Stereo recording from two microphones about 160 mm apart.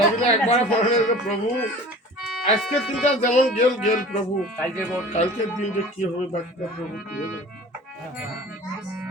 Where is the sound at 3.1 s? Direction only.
50° left (ahead or behind).